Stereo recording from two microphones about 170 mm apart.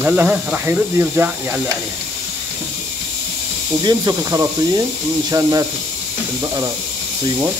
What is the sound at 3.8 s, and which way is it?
Speech, 20° right (ahead or behind).